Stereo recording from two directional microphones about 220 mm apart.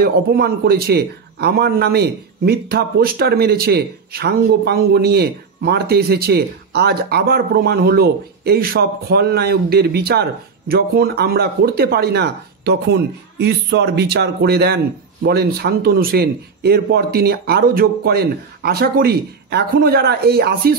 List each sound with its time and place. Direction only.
0.0 s a man's voice: 45° right (ahead or behind)